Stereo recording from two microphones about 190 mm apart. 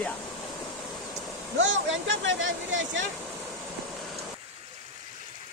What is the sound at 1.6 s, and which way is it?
Speech, 80° right.